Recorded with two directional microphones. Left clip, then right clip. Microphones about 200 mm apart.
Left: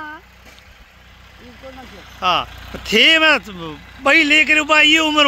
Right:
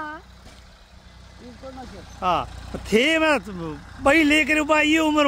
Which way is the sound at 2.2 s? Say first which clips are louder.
Left 5 dB; 5° right (ahead or behind).